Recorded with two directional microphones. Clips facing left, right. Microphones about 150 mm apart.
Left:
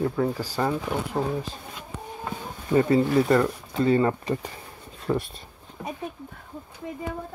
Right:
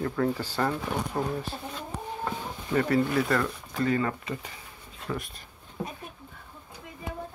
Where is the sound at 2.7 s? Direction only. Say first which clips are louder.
Left 5 dB; 20° left (ahead or behind).